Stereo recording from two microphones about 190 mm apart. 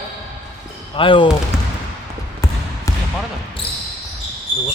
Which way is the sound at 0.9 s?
25° left (ahead or behind).